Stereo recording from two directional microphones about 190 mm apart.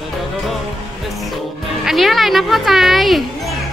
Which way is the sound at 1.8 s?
Centre (ahead or behind).